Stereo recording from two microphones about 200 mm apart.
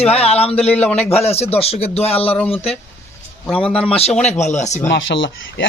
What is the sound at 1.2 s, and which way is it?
Speech, 30° left (ahead or behind).